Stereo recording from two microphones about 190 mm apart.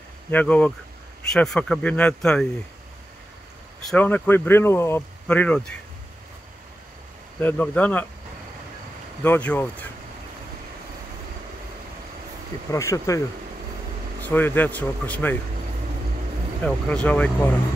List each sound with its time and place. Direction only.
0.3 s speech: 10° left (ahead or behind)
3.8 s speech: 5° left (ahead or behind)
7.3 s speech: 10° left (ahead or behind)
9.2 s speech: 10° left (ahead or behind)
12.7 s speech: 15° left (ahead or behind)
16.6 s speech: 5° left (ahead or behind)